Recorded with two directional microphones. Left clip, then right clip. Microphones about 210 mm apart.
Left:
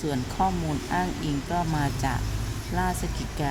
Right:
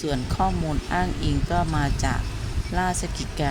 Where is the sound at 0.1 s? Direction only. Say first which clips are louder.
Right 1 dB; 15° right (ahead or behind).